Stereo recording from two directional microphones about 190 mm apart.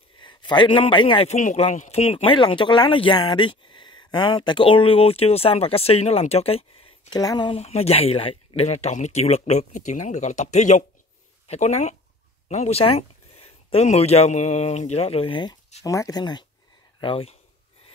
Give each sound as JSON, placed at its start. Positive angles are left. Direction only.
{"t": 0.2, "sound": "a man's voice", "side_deg": 25}
{"t": 7.5, "sound": "a man's voice", "side_deg": 35}